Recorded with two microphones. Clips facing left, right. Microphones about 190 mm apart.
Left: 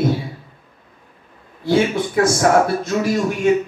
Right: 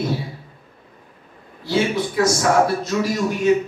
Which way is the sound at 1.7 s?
55° left (ahead or behind).